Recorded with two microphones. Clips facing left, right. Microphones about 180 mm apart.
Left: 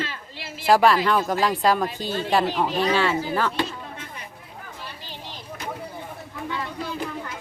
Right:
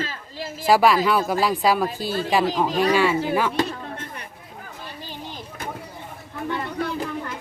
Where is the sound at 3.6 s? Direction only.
60° right (ahead or behind).